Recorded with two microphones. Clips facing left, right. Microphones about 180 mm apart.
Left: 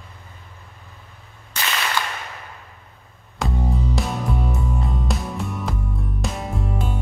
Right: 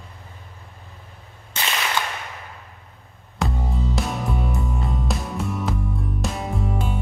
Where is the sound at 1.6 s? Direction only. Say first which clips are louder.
Even; 20° right (ahead or behind).